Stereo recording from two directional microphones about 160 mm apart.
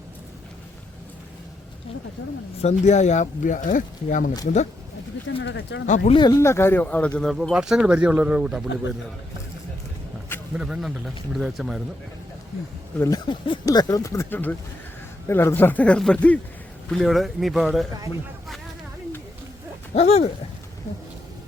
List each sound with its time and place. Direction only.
2.6 s speech: 45° left (ahead or behind)
6.1 s speech: 25° left (ahead or behind); by 9.0 s 5° right (ahead or behind)
10.5 s speech: 5° right (ahead or behind)
13.0 s speech: 25° left (ahead or behind); by 17.8 s centre (ahead or behind)
19.9 s owl: 40° left (ahead or behind)